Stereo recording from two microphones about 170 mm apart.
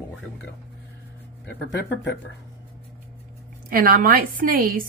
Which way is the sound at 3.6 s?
60° right (ahead or behind).